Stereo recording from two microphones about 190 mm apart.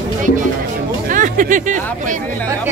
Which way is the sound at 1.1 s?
45° right (ahead or behind).